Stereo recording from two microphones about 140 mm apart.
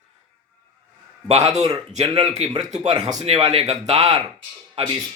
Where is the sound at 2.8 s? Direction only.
35° right (ahead or behind).